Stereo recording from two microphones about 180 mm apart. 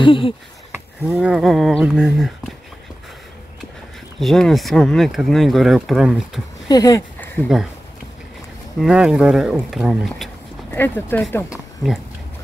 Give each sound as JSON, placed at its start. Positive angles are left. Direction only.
{"t": 0.0, "sound": "speech", "side_deg": 30}
{"t": 0.7, "sound": "speech", "side_deg": -5}
{"t": 4.2, "sound": "speech", "side_deg": 0}
{"t": 6.7, "sound": "speech", "side_deg": 20}
{"t": 7.4, "sound": "speech", "side_deg": 5}
{"t": 8.8, "sound": "speech", "side_deg": -5}
{"t": 11.5, "sound": "a sound", "side_deg": 0}